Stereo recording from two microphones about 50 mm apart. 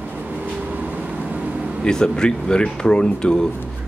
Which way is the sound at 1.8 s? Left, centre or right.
Centre.